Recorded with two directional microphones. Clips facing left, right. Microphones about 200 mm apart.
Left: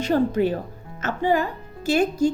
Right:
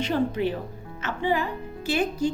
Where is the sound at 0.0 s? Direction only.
45° left (ahead or behind).